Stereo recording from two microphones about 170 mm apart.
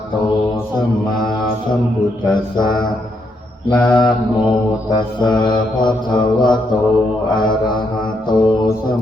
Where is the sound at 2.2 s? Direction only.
25° left (ahead or behind).